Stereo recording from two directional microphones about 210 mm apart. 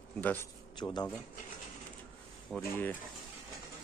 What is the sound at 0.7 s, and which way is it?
Speech, 20° left (ahead or behind).